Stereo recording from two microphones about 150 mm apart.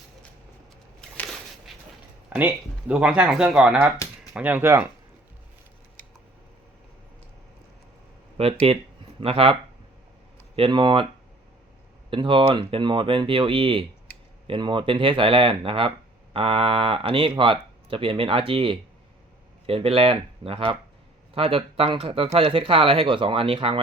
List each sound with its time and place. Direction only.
2.3 s speech: 10° right (ahead or behind)
8.4 s speech: 40° right (ahead or behind)
12.1 s speech: 35° right (ahead or behind)